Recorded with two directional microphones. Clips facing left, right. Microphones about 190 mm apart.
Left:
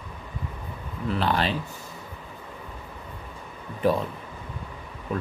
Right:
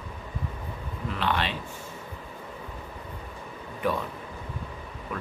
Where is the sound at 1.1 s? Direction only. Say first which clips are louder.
Left 4 dB; 35° left (ahead or behind).